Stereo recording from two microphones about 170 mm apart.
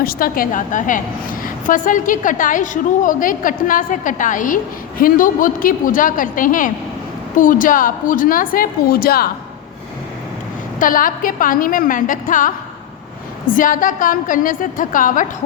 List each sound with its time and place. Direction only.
0.0 s a woman's voice: 60° left (ahead or behind)
10.8 s a woman's voice: 55° left (ahead or behind)